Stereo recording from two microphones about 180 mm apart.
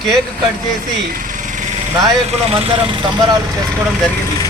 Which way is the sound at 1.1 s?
50° right (ahead or behind).